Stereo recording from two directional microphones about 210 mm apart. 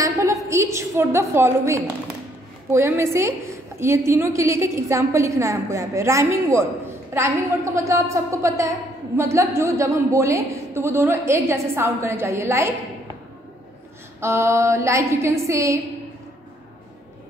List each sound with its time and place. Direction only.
0.0 s a sound: 15° right (ahead or behind)
0.5 s a woman's voice: 15° right (ahead or behind)
14.2 s a woman's voice: 15° right (ahead or behind)